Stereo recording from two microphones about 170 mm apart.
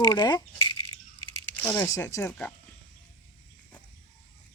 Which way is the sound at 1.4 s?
10° left (ahead or behind).